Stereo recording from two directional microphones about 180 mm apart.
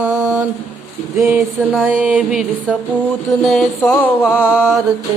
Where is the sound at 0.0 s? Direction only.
15° right (ahead or behind).